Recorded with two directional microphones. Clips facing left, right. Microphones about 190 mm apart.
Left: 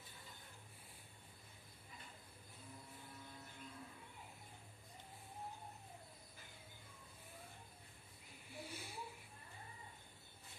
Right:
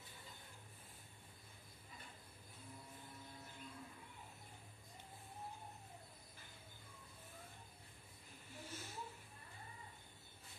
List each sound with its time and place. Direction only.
8.5 s snake: 10° left (ahead or behind)